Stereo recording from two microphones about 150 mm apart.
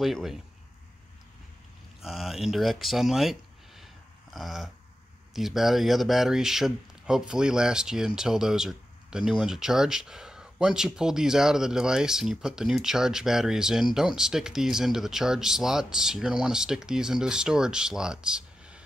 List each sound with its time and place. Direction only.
0.0 s a man's voice: centre (ahead or behind)
2.0 s a man's voice: centre (ahead or behind)